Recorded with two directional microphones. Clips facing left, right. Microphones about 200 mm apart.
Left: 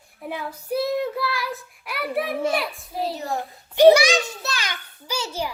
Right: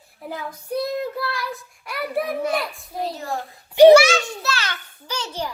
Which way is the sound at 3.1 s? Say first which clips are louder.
Left 1 dB; 20° left (ahead or behind).